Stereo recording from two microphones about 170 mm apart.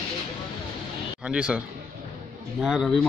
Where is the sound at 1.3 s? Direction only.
5° right (ahead or behind).